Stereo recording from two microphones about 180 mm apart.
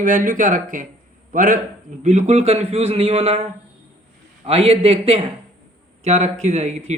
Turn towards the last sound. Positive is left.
turn(degrees=-40)  # may be behind; listen again after turning